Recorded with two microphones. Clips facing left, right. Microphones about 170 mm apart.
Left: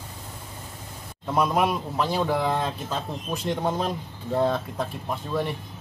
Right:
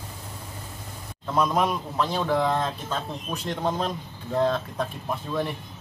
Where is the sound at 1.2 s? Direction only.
10° left (ahead or behind).